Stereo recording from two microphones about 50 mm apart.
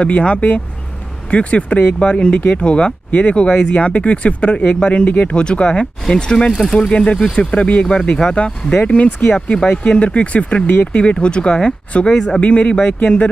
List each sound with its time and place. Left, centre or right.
0.0 s speech: left
3.4 s speech: left
5.4 s speech: left
6.5 s speech: centre
6.9 s speech: centre
12.4 s speech: left